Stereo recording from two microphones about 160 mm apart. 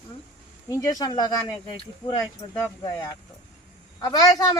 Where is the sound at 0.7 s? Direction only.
20° left (ahead or behind).